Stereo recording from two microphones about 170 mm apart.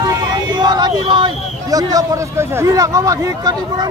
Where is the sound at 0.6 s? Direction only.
25° right (ahead or behind).